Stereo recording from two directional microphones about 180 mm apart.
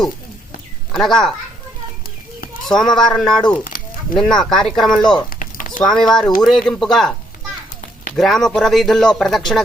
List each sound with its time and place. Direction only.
0.9 s speech: centre (ahead or behind)
2.6 s speech: centre (ahead or behind)
5.3 s a sound: 50° left (ahead or behind)
5.8 s speech: centre (ahead or behind)